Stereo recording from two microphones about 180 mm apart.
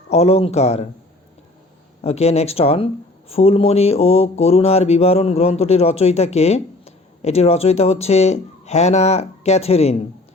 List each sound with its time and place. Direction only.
0.1 s speech: 35° left (ahead or behind)
2.0 s speech: 35° left (ahead or behind)